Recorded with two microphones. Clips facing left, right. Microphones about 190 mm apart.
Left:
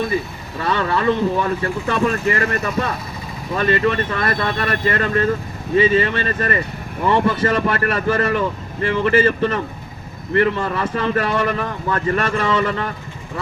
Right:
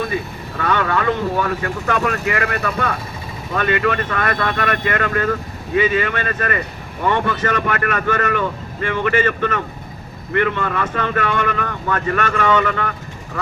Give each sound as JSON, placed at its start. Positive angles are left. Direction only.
{"t": 0.6, "sound": "speech", "side_deg": 30}